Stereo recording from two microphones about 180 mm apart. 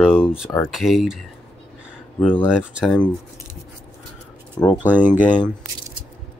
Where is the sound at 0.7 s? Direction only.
Centre (ahead or behind).